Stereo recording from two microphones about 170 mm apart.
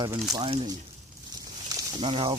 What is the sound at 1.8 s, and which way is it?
Speech, 25° right (ahead or behind).